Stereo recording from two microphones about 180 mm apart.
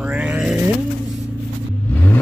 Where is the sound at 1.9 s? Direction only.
10° left (ahead or behind).